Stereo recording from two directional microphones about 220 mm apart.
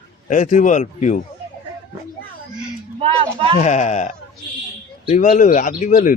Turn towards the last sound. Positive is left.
turn(degrees=35)  # may be behind; listen again after turning